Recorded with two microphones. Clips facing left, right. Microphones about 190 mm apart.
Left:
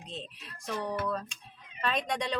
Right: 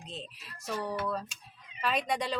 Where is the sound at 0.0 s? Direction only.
5° right (ahead or behind).